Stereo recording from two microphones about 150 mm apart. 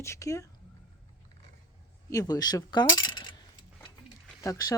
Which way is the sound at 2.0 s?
25° left (ahead or behind).